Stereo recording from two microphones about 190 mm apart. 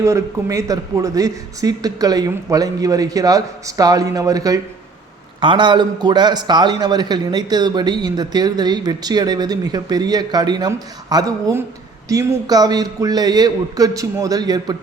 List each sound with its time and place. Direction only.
0.0 s a man's voice: 15° right (ahead or behind)